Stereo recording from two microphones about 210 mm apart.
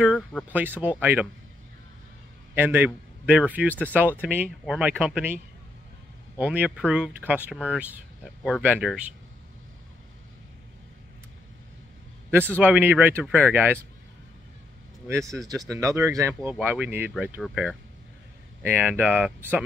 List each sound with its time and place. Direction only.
0.1 s speech: 5° left (ahead or behind)
0.5 s speech: 10° right (ahead or behind)
2.5 s speech: 10° right (ahead or behind)
6.3 s speech: 10° right (ahead or behind)
12.5 s speech: 10° right (ahead or behind)
15.0 s speech: 15° right (ahead or behind)